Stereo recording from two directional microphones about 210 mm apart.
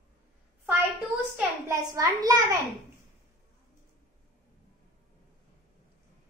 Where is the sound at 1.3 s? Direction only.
15° right (ahead or behind).